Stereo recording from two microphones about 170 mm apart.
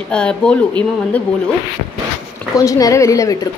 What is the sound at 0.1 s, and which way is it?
Speech, 5° left (ahead or behind).